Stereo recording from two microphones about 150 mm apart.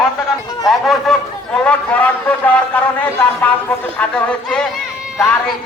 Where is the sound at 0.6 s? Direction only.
Centre (ahead or behind).